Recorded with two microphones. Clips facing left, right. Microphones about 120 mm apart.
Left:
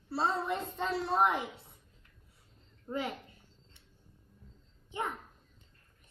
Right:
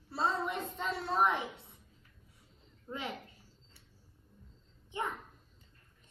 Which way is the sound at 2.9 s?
15° left (ahead or behind).